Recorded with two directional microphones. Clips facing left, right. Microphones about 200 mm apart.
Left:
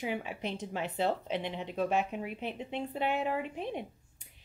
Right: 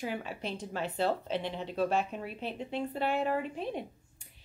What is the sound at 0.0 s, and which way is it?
A woman's voice, 15° left (ahead or behind).